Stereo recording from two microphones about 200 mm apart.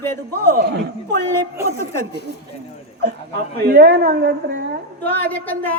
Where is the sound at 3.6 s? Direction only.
50° right (ahead or behind).